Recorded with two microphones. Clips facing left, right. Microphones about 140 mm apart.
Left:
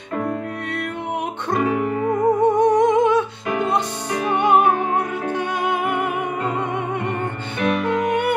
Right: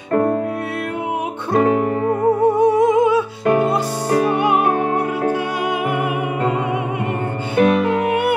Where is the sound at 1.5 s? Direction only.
40° right (ahead or behind).